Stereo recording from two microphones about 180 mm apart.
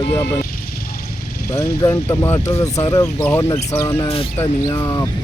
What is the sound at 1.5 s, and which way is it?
Speech, 20° left (ahead or behind).